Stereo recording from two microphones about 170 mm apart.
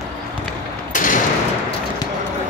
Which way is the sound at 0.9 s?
50° left (ahead or behind).